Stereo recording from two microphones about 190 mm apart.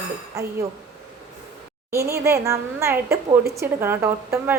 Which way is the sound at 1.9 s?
15° right (ahead or behind).